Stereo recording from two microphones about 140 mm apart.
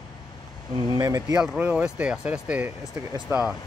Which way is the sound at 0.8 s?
25° right (ahead or behind).